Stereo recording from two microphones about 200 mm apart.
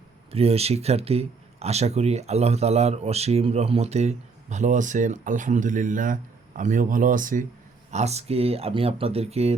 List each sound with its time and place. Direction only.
0.3 s speech: 30° right (ahead or behind)